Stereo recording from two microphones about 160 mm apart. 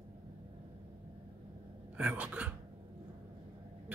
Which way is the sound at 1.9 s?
10° right (ahead or behind).